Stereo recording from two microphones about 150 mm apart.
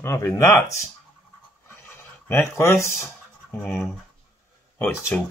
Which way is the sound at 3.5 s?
Centre (ahead or behind).